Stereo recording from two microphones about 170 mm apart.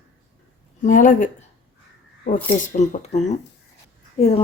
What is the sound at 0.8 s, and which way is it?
Speech, 50° left (ahead or behind).